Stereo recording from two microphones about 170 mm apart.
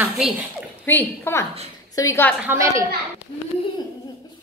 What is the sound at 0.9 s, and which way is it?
Child singing, 10° left (ahead or behind).